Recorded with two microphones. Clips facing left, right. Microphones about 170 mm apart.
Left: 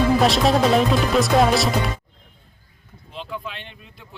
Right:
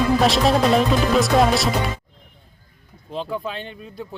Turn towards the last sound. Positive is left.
turn(degrees=-35)  # may be behind; listen again after turning